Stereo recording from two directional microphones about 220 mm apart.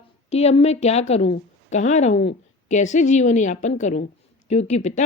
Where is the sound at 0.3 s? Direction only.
30° left (ahead or behind).